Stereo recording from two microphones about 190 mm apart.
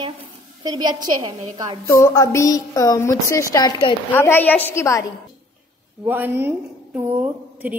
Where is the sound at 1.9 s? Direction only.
15° left (ahead or behind).